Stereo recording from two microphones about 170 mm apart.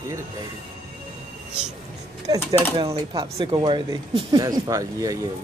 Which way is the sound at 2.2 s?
20° right (ahead or behind).